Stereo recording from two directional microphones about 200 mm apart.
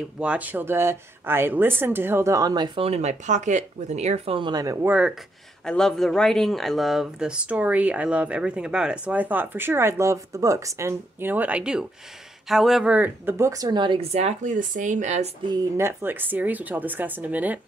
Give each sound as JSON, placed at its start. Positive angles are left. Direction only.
{"t": 0.2, "sound": "speech", "side_deg": -5}
{"t": 5.7, "sound": "speech", "side_deg": 5}
{"t": 15.5, "sound": "speech", "side_deg": -10}